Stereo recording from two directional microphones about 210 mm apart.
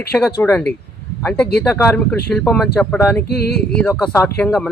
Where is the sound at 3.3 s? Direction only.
50° left (ahead or behind).